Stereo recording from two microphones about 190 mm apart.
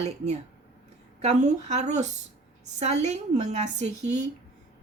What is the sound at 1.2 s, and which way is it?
Speech, 35° right (ahead or behind).